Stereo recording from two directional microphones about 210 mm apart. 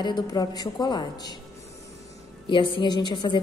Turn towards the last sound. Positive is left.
turn(degrees=20)  # may be behind; listen again after turning